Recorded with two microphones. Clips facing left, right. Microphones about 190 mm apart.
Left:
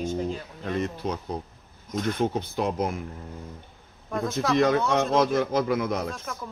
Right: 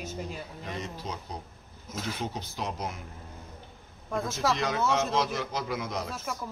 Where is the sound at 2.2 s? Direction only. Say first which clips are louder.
Left 9 dB; 55° left (ahead or behind).